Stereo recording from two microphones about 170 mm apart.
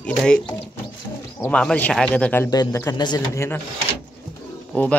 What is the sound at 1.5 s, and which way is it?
Speech, 5° left (ahead or behind).